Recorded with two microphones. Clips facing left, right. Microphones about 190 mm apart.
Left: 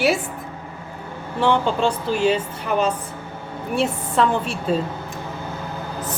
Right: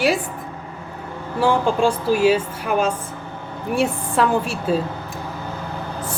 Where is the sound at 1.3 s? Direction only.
10° right (ahead or behind).